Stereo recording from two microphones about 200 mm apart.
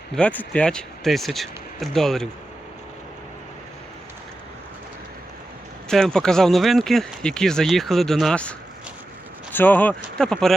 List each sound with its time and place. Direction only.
0.2 s speech: 5° left (ahead or behind)
5.9 s speech: 5° left (ahead or behind)